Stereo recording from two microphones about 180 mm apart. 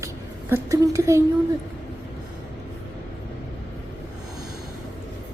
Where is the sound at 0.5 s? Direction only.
15° right (ahead or behind).